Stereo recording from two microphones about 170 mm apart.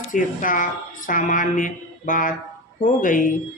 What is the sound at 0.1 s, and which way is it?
Speech, 50° left (ahead or behind).